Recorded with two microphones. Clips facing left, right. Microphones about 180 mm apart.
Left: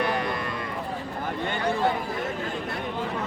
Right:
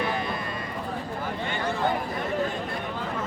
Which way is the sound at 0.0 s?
65° left (ahead or behind).